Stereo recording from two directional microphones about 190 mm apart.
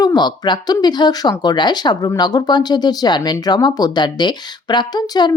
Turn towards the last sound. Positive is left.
turn(degrees=20)  # may be behind; listen again after turning